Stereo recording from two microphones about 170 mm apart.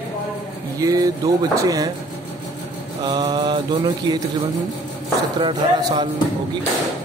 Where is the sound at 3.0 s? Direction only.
25° right (ahead or behind).